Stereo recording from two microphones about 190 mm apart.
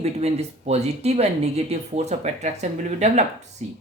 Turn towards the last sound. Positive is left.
turn(degrees=-35)  # may be behind; listen again after turning